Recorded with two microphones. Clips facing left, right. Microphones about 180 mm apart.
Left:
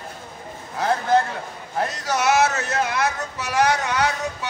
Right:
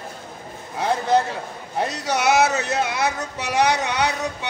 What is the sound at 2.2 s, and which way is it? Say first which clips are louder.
Speech: right 1 dB; 15° right (ahead or behind).